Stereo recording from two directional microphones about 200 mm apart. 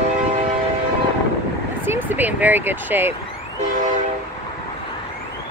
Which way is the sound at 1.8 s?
10° right (ahead or behind).